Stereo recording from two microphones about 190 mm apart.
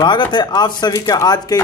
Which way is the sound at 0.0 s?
25° left (ahead or behind).